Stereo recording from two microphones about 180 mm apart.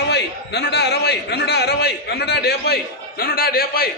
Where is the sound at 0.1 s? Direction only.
70° left (ahead or behind).